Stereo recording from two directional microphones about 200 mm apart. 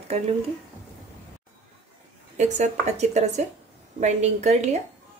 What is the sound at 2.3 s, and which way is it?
A woman's voice, 35° right (ahead or behind).